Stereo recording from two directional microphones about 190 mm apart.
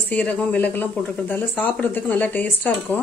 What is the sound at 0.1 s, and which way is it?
Speech, 10° left (ahead or behind).